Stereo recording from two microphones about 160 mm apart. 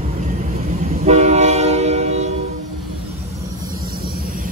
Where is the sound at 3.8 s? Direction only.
55° right (ahead or behind).